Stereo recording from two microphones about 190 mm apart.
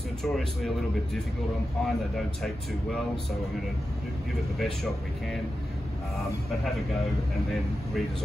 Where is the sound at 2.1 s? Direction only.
Centre (ahead or behind).